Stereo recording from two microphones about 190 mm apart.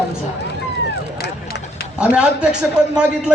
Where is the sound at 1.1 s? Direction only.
60° left (ahead or behind).